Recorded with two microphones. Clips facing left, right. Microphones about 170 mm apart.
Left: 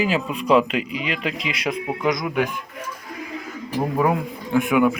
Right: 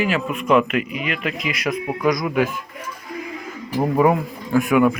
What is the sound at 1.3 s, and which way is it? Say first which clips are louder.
Speech: right 2 dB; 30° left (ahead or behind).